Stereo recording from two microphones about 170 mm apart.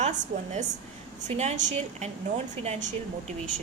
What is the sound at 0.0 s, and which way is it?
A woman's voice, 45° right (ahead or behind).